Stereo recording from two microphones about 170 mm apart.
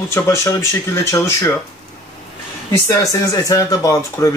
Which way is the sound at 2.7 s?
20° left (ahead or behind).